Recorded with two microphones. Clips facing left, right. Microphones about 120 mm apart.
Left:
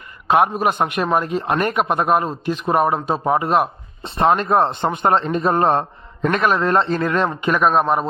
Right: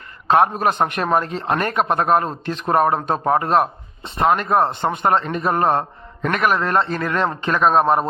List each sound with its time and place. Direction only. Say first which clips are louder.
0.3 s a man's voice: even; 15° left (ahead or behind)
4.0 s a man's voice: left 1 dB; 30° left (ahead or behind); by 7.7 s 10° left (ahead or behind)
7.7 s a man's voice: right 1 dB; centre (ahead or behind)